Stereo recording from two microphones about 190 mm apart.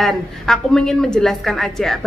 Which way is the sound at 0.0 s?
Centre (ahead or behind).